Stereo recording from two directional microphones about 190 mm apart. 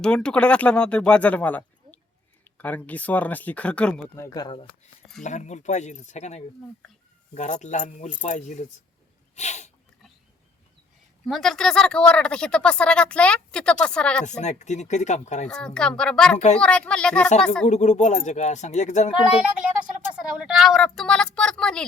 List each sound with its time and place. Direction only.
0.0 s speech: 5° left (ahead or behind); by 4.7 s 25° left (ahead or behind)
5.2 s speech: 40° left (ahead or behind)
9.3 s sneeze: 35° left (ahead or behind)
11.3 s speech: centre (ahead or behind)
14.3 s speech: 40° left (ahead or behind)
15.4 s speech: 5° left (ahead or behind)
17.7 s speech: 40° left (ahead or behind)
20.1 s speech: 5° right (ahead or behind)